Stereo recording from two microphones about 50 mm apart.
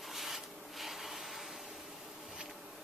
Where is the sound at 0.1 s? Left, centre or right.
Centre.